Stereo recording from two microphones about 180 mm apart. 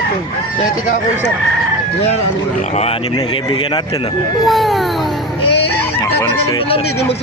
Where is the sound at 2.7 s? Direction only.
35° left (ahead or behind).